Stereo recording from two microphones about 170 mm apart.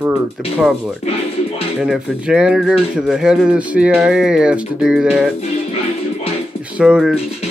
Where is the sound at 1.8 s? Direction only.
5° right (ahead or behind).